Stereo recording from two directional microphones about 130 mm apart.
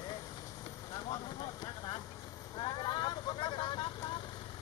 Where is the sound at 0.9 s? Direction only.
35° left (ahead or behind).